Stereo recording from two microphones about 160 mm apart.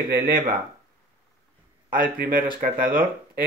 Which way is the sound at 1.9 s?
60° right (ahead or behind).